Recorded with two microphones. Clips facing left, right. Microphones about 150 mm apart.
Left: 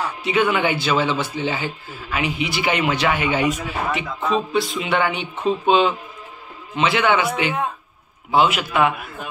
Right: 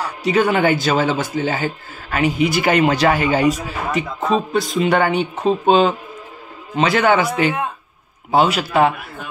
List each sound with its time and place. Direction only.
0.0 s a man's voice: 40° right (ahead or behind)